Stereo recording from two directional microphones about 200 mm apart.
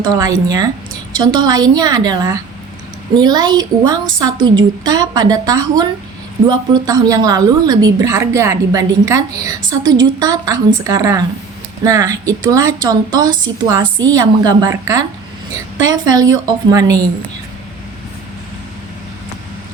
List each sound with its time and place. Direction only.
0.0 s a woman's voice: 15° right (ahead or behind)